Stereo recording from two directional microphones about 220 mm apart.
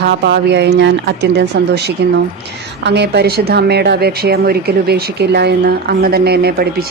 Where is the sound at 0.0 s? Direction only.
50° right (ahead or behind).